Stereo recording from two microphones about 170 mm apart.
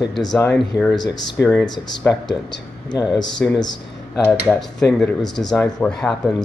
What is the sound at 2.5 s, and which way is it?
Speech, 25° left (ahead or behind).